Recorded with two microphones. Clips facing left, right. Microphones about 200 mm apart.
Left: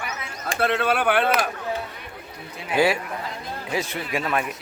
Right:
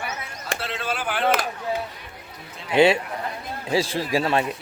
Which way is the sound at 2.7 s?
25° right (ahead or behind).